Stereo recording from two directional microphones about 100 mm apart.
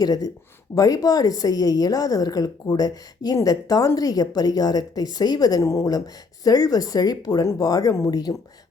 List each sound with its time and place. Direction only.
0.0 s a woman's voice: 35° left (ahead or behind)